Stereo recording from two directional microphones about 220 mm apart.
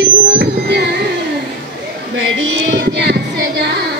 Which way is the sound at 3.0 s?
50° right (ahead or behind).